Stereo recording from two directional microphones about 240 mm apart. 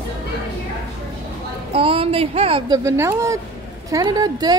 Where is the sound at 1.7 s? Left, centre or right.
Right.